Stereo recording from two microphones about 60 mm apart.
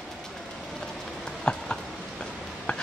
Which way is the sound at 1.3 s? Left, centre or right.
Centre.